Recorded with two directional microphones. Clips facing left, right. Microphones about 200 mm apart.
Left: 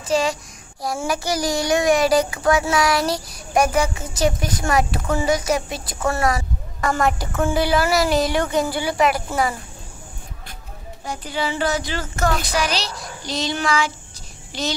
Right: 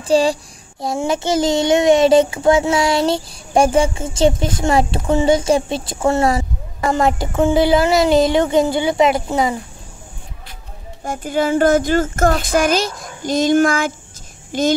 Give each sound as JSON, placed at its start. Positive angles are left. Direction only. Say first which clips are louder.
{"t": 0.0, "sound": "a child's voice", "louder": "right 6 dB", "side_deg": -30}
{"t": 11.1, "sound": "a child's voice", "louder": "right 7 dB", "side_deg": -50}